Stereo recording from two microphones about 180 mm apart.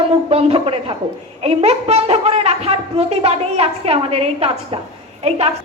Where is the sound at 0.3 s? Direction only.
35° right (ahead or behind).